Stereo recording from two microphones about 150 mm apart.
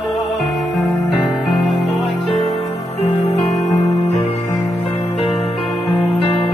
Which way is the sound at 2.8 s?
45° left (ahead or behind).